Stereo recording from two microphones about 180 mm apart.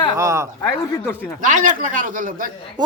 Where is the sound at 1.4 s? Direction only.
45° right (ahead or behind).